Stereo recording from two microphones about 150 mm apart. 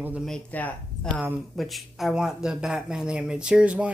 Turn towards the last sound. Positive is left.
turn(degrees=-10)  # may be behind; listen again after turning